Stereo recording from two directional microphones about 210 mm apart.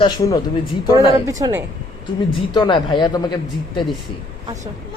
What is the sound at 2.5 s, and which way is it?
Speech, 20° left (ahead or behind).